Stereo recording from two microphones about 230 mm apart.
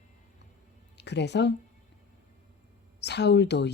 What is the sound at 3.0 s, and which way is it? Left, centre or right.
Speech, left.